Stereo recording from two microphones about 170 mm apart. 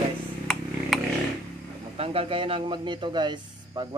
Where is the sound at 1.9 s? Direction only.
35° right (ahead or behind).